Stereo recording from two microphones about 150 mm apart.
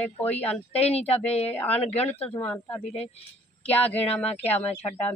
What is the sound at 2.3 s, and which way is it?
Speech, 10° left (ahead or behind).